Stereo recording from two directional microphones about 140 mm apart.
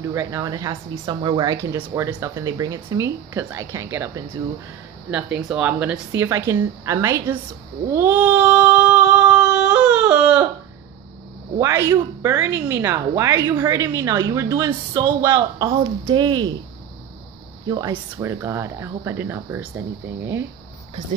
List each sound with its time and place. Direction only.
0.1 s a woman's voice: 20° right (ahead or behind)
5.6 s a woman's voice: 10° right (ahead or behind)
7.9 s a sound: 15° right (ahead or behind)
11.5 s a woman's voice: 25° right (ahead or behind)
17.6 s a woman's voice: 25° right (ahead or behind)